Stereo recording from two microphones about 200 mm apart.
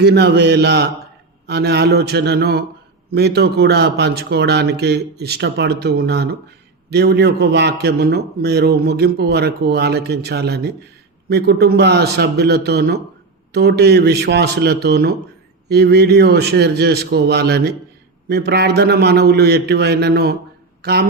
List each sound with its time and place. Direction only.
0.0 s a man's voice: 55° right (ahead or behind)